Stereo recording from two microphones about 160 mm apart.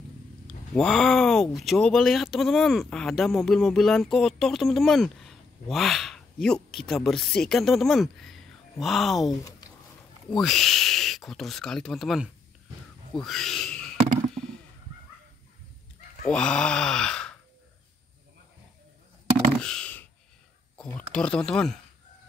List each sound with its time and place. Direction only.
0.7 s speech: 5° left (ahead or behind)
10.3 s speech: centre (ahead or behind)
16.3 s speech: 5° left (ahead or behind)
19.6 s a sound: 5° left (ahead or behind)
21.1 s speech: 5° left (ahead or behind)